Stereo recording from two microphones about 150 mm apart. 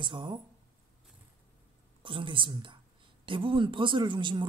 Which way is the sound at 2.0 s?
35° right (ahead or behind).